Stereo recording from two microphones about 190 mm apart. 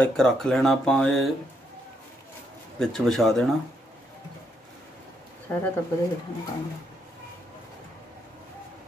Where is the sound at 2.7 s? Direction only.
Centre (ahead or behind).